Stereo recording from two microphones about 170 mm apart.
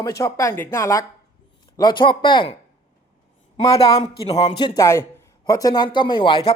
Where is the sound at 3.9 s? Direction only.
35° left (ahead or behind).